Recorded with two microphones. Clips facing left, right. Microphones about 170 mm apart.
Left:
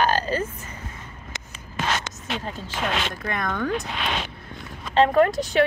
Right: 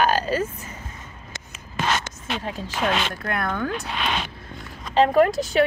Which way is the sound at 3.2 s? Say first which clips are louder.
Right 1 dB; 5° right (ahead or behind).